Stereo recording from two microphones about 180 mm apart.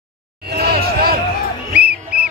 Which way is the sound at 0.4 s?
60° right (ahead or behind).